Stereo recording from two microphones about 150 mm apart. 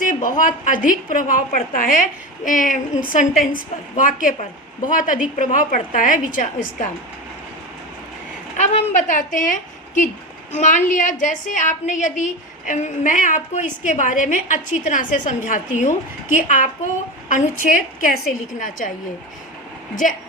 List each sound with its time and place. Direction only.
0.0 s a woman's voice: 60° left (ahead or behind)
8.5 s a woman's voice: 50° left (ahead or behind)
20.0 s a woman's voice: 60° left (ahead or behind)